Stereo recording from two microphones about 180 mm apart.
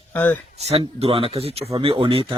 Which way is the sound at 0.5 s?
35° right (ahead or behind).